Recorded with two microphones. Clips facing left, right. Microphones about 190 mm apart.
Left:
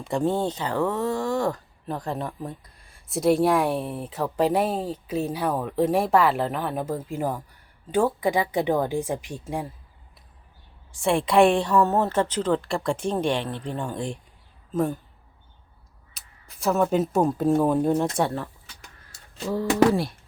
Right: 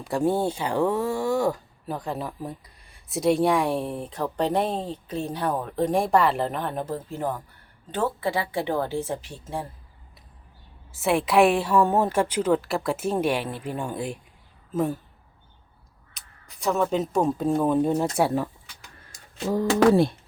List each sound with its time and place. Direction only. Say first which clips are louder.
0.0 s a woman's voice: right 1 dB; 5° right (ahead or behind); by 9.6 s 15° left (ahead or behind)
10.9 s a woman's voice: left 1 dB; 5° right (ahead or behind)
16.1 s speech: even; centre (ahead or behind)
19.1 s speech: right 2 dB; 15° right (ahead or behind)